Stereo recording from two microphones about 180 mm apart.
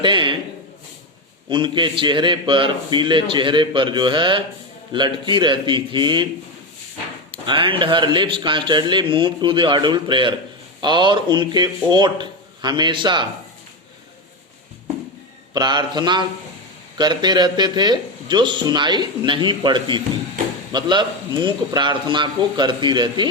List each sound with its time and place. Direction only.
0.0 s a sound: 25° right (ahead or behind)
1.5 s speech: 25° right (ahead or behind)
7.3 s speech: 30° right (ahead or behind)
15.5 s speech: 25° right (ahead or behind)